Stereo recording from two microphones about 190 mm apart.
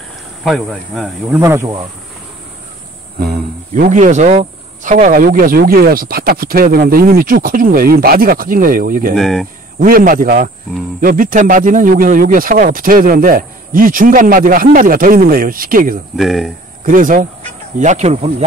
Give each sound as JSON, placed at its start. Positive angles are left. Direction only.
{"t": 0.4, "sound": "speech", "side_deg": 0}
{"t": 1.4, "sound": "speech", "side_deg": -15}
{"t": 3.3, "sound": "speech", "side_deg": -45}
{"t": 9.1, "sound": "speech", "side_deg": 0}
{"t": 9.8, "sound": "speech", "side_deg": -45}
{"t": 16.2, "sound": "speech", "side_deg": 0}
{"t": 16.8, "sound": "speech", "side_deg": -45}